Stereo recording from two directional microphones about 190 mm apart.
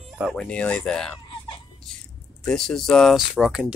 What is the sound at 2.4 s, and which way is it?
Speech, 5° left (ahead or behind).